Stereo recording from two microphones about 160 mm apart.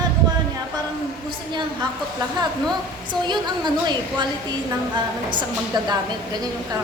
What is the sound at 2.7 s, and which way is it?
A woman's voice, 30° right (ahead or behind).